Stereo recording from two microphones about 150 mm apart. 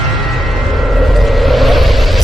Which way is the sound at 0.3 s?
Centre (ahead or behind).